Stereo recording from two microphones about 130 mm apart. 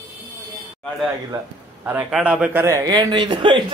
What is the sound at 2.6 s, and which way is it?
Speech, 30° right (ahead or behind).